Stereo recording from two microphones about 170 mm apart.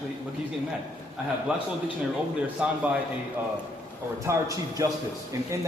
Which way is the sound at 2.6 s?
5° right (ahead or behind).